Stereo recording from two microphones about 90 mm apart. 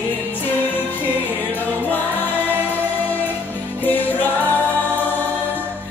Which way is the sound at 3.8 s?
20° left (ahead or behind).